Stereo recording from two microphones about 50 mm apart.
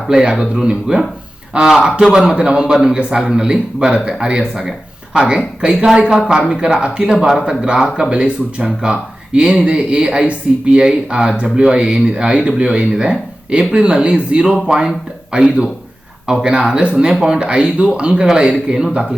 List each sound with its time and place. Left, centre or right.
0.1 s speech: centre